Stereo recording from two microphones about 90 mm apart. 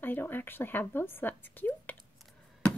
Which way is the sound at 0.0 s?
20° left (ahead or behind).